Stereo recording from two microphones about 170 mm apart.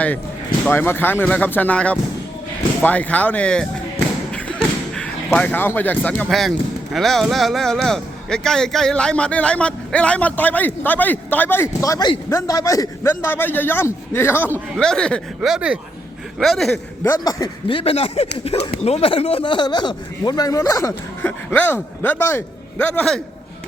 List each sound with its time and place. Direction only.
0.6 s speech: 10° left (ahead or behind)
4.3 s slam: 5° left (ahead or behind)
6.9 s speech: centre (ahead or behind)
17.0 s speech: 15° left (ahead or behind)
17.7 s speech: 35° left (ahead or behind); by 23.2 s 5° left (ahead or behind)